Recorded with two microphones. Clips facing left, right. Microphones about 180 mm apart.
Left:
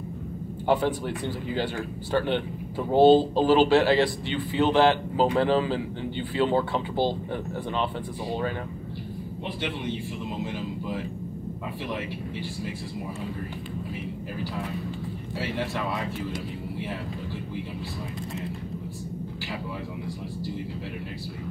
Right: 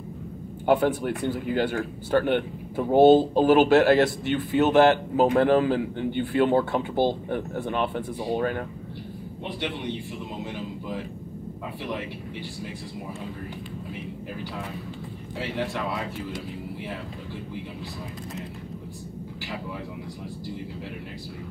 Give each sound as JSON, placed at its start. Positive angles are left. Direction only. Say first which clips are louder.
{"t": 0.7, "sound": "a man's voice", "louder": "right 3 dB", "side_deg": -55}